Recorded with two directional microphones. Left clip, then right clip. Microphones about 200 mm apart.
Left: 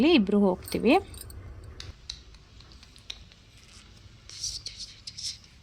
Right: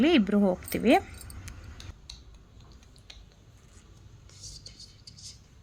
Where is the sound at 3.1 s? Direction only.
Centre (ahead or behind).